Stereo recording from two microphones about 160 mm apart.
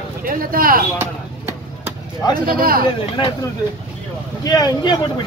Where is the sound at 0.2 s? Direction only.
65° right (ahead or behind).